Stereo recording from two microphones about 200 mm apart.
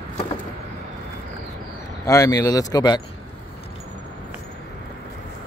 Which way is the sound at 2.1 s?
15° left (ahead or behind).